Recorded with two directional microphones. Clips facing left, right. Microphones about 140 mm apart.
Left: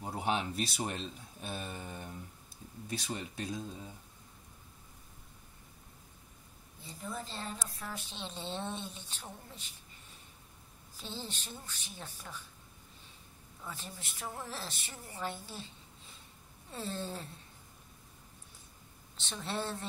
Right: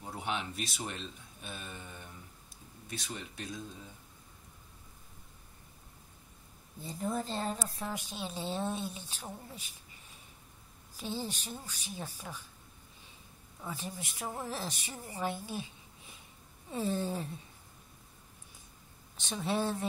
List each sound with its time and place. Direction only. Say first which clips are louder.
0.0 s speech: left 3 dB; 35° left (ahead or behind)
7.0 s a woman's voice: right 7 dB; 45° right (ahead or behind)
7.5 s speech: right 5 dB; 30° right (ahead or behind)
7.9 s speech: right 4 dB; 10° right (ahead or behind)
11.0 s speech: right 6 dB; 10° right (ahead or behind)
13.6 s speech: right 5 dB; 15° right (ahead or behind)
19.1 s speech: right 5 dB; 10° right (ahead or behind)